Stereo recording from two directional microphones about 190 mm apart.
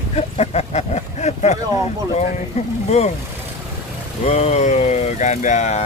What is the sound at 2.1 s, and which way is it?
Speech, 35° left (ahead or behind).